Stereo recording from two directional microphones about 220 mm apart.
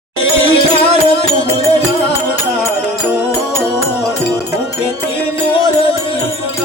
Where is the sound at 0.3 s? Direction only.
25° left (ahead or behind).